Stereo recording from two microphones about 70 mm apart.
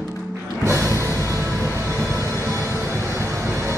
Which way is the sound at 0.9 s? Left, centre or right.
Right.